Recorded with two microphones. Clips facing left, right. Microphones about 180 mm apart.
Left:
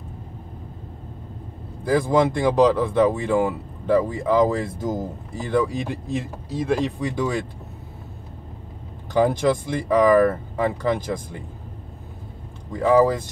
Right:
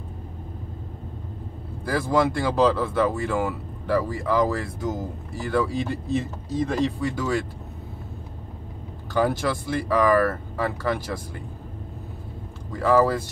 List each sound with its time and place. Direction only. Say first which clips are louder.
1.9 s speech: left 3 dB; 20° left (ahead or behind)
9.1 s speech: left 4 dB; 20° left (ahead or behind)
12.7 s speech: left 3 dB; 20° left (ahead or behind)